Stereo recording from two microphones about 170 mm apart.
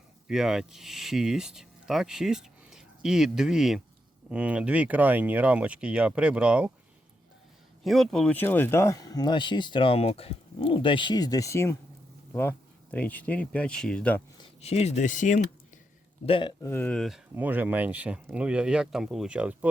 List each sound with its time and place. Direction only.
0.3 s speech: centre (ahead or behind)
7.9 s speech: centre (ahead or behind)
14.4 s speech: 40° left (ahead or behind)
16.2 s speech: 30° left (ahead or behind)
16.6 s speech: 10° left (ahead or behind)
17.3 s speech: 10° right (ahead or behind)